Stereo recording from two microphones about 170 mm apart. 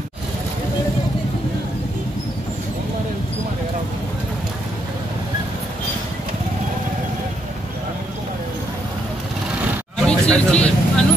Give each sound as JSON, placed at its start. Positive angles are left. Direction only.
{"t": 10.0, "sound": "vehicle", "side_deg": 5}